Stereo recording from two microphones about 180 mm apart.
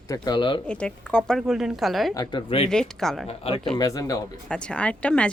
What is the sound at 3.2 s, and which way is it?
Speech, 30° left (ahead or behind).